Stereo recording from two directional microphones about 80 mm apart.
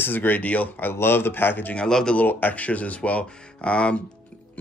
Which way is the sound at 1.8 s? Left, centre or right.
Centre.